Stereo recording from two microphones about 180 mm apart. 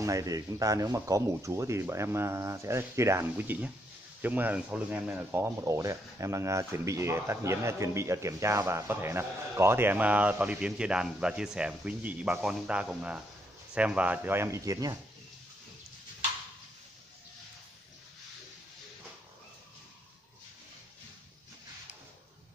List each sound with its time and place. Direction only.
0.0 s speech: 20° right (ahead or behind)